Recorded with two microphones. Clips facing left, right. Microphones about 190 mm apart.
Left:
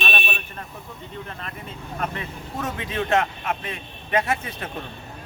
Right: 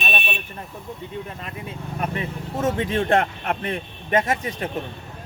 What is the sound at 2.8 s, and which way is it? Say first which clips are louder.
A man's voice: right 1 dB; 50° right (ahead or behind).